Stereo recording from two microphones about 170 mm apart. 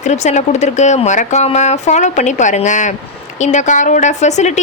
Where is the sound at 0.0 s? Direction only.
45° left (ahead or behind).